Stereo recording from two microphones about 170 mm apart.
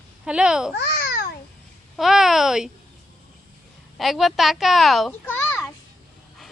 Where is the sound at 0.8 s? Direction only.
70° left (ahead or behind).